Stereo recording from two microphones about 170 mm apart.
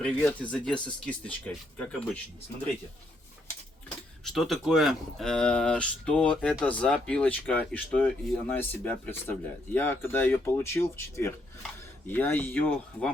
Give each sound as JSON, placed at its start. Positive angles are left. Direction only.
{"t": 0.0, "sound": "speech", "side_deg": 10}
{"t": 3.8, "sound": "speech", "side_deg": 5}